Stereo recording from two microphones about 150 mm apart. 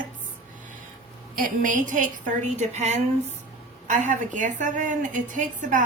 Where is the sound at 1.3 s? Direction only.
65° right (ahead or behind).